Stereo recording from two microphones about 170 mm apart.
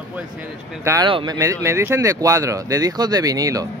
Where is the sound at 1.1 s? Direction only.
30° right (ahead or behind).